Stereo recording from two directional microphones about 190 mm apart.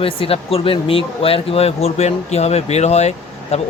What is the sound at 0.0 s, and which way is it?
Speech, 30° left (ahead or behind).